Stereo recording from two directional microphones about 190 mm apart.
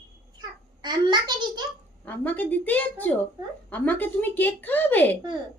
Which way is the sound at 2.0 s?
10° left (ahead or behind).